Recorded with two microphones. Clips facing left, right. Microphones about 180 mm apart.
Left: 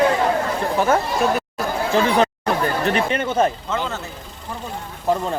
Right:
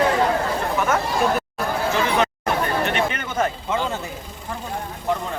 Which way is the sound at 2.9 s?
30° left (ahead or behind).